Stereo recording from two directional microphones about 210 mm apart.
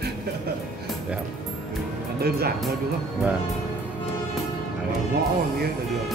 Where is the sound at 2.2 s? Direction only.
50° right (ahead or behind).